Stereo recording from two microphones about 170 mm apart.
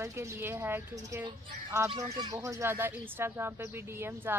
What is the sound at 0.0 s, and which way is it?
Speech, 15° right (ahead or behind).